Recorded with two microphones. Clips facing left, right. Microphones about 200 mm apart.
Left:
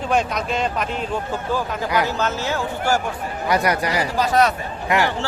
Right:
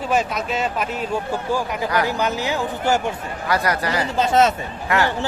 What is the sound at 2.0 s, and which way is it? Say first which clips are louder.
Speech: right 1 dB; 15° right (ahead or behind).